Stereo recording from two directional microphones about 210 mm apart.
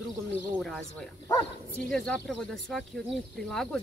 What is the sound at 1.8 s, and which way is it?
Speech, 5° left (ahead or behind).